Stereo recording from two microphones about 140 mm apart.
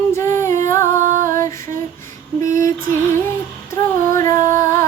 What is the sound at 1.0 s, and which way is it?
Music, 70° right (ahead or behind).